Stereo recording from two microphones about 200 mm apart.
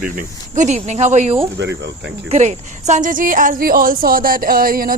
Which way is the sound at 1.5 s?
60° right (ahead or behind).